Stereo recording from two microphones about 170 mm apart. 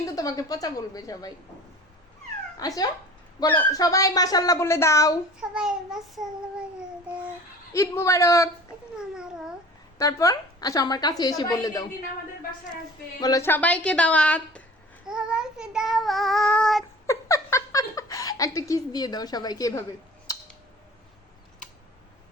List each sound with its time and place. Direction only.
0.0 s speech: 20° left (ahead or behind)
2.6 s speech: 20° left (ahead or behind)
5.4 s child singing: 5° right (ahead or behind)
7.7 s a woman's voice: 15° left (ahead or behind)
9.0 s child singing: 5° right (ahead or behind)
10.0 s speech: 20° left (ahead or behind)
13.1 s a woman's voice: 20° left (ahead or behind)
15.0 s child singing: 5° right (ahead or behind)
17.1 s speech: 20° left (ahead or behind)